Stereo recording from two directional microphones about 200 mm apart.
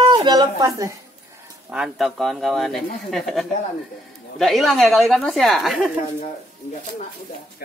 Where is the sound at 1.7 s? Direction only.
Centre (ahead or behind).